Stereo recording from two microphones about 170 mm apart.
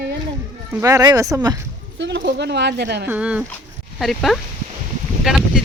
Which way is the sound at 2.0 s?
90° right.